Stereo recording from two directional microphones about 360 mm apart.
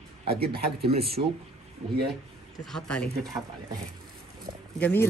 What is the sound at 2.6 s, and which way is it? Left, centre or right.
Speech, centre.